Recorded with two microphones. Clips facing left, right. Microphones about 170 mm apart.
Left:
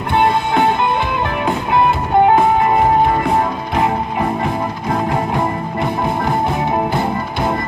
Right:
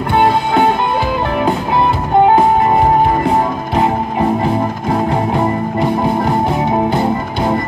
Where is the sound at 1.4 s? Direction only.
30° right (ahead or behind).